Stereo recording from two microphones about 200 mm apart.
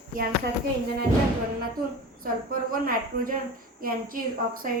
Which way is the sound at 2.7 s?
45° right (ahead or behind).